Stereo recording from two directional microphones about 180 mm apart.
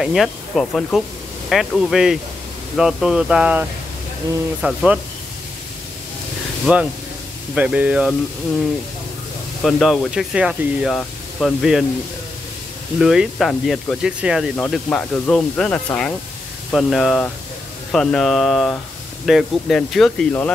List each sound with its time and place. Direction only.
0.0 s speech: centre (ahead or behind)
6.6 s speech: 5° right (ahead or behind)
9.6 s speech: centre (ahead or behind)
13.0 s speech: centre (ahead or behind)